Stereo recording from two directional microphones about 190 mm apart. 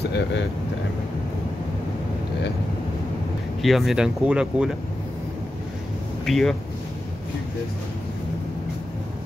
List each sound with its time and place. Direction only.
0.0 s speech: 65° left (ahead or behind)
3.6 s speech: centre (ahead or behind)
6.2 s speech: centre (ahead or behind)